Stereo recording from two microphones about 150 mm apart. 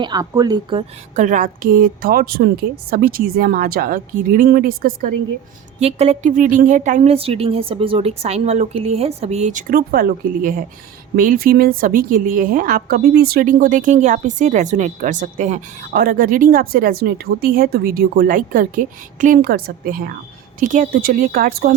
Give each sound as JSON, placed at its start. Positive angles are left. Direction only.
{"t": 0.0, "sound": "speech", "side_deg": -25}
{"t": 1.1, "sound": "speech", "side_deg": -60}
{"t": 5.8, "sound": "a woman's voice", "side_deg": -45}
{"t": 11.2, "sound": "a woman's voice", "side_deg": -70}
{"t": 16.0, "sound": "speech", "side_deg": -75}
{"t": 20.6, "sound": "speech", "side_deg": -60}